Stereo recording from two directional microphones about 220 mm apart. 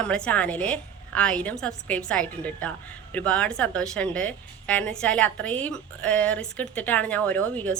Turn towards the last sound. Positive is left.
turn(degrees=5)  # may be behind; listen again after turning